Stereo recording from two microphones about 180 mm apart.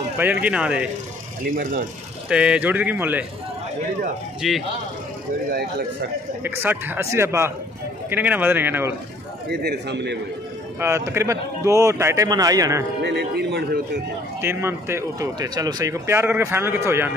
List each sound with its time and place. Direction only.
0.2 s speech: 10° right (ahead or behind)
1.4 s speech: 50° right (ahead or behind)
2.2 s speech: 5° right (ahead or behind)
4.4 s speech: centre (ahead or behind)
5.5 s speech: 55° right (ahead or behind)
6.4 s speech: 10° right (ahead or behind)
9.5 s a man's voice: 65° right (ahead or behind)
10.8 s speech: 15° right (ahead or behind)
13.0 s a man's voice: 70° right (ahead or behind)
14.4 s speech: 15° right (ahead or behind)